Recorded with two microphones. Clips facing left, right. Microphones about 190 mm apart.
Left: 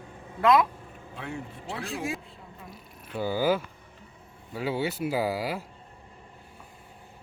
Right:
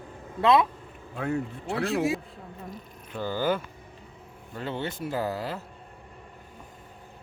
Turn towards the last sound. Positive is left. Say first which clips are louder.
# left 2 dB
turn(degrees=10)  # may be behind; listen again after turning